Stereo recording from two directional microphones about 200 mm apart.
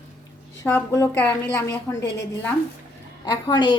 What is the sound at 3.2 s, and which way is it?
Speech, 20° left (ahead or behind).